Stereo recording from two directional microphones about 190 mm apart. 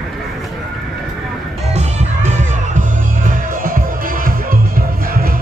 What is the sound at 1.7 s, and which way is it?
Music, 35° right (ahead or behind).